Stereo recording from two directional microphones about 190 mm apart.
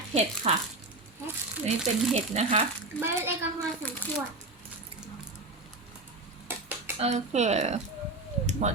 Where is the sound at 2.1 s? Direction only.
35° right (ahead or behind).